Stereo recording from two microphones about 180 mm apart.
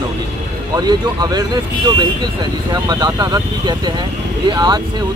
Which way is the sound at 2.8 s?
25° right (ahead or behind).